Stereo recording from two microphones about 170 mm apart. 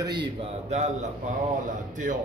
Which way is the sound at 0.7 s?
45° right (ahead or behind).